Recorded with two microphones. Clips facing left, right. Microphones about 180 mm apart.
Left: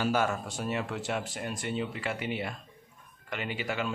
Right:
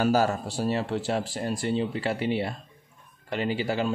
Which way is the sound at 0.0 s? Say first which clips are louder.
Right 5 dB; 35° right (ahead or behind).